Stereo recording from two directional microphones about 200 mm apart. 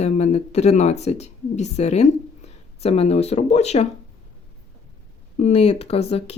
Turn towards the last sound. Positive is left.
turn(degrees=30)  # may be behind; listen again after turning